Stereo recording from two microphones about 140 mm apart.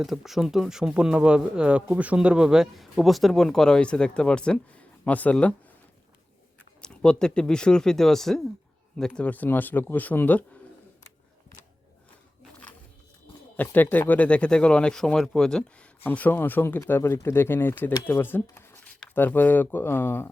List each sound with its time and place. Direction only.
0.0 s speech: centre (ahead or behind)
6.8 s speech: 5° left (ahead or behind)
13.6 s speech: 10° left (ahead or behind)